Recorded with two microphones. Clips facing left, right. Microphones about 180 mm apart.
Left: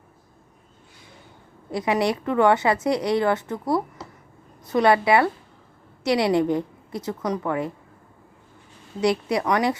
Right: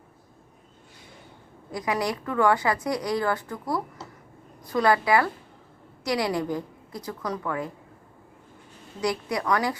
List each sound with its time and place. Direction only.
1.7 s a woman's voice: 25° left (ahead or behind)
9.0 s a woman's voice: 25° left (ahead or behind)